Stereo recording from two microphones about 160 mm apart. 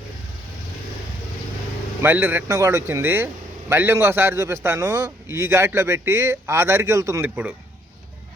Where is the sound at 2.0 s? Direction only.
15° right (ahead or behind).